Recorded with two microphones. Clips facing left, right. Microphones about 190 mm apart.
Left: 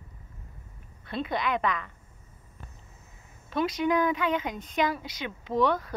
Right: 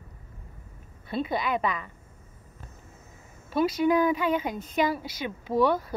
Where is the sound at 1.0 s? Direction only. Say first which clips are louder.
Right 1 dB; 5° right (ahead or behind).